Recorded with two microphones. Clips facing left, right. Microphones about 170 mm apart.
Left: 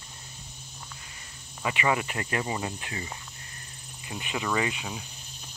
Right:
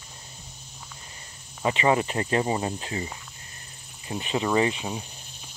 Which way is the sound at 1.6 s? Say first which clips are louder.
Right 5 dB; 30° right (ahead or behind).